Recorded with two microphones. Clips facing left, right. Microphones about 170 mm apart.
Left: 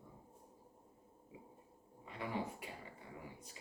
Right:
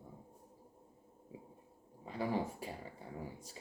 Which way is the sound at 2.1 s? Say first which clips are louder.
Right 5 dB; 35° right (ahead or behind).